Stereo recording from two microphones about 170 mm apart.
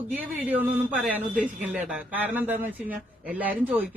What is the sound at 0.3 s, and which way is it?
Speech, 10° right (ahead or behind).